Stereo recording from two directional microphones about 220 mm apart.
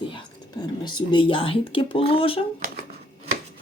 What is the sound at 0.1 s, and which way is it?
Speech, 20° left (ahead or behind).